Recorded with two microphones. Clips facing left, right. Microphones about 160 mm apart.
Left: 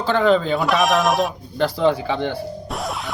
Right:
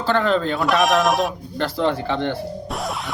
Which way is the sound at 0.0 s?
Centre (ahead or behind).